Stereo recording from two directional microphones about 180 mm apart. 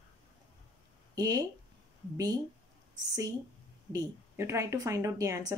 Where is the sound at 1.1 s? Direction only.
20° right (ahead or behind).